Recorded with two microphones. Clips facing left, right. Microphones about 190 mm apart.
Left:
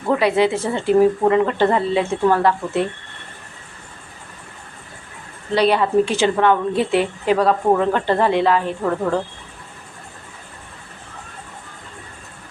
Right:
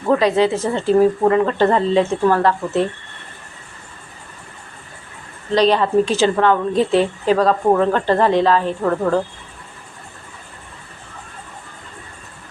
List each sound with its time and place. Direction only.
0.1 s speech: 15° left (ahead or behind)
5.5 s speech: 10° left (ahead or behind)